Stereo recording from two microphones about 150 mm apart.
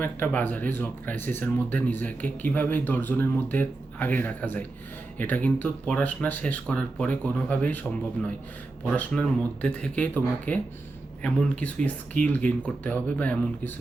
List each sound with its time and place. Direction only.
0.0 s speech: 10° left (ahead or behind)
8.9 s speech: 5° left (ahead or behind)